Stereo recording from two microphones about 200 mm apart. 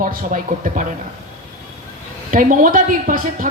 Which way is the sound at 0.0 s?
45° right (ahead or behind).